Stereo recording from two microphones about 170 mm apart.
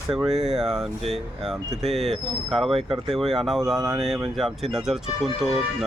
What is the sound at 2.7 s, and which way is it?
Speech, 30° right (ahead or behind).